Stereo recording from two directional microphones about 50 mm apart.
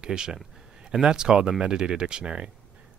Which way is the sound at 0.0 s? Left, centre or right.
Centre.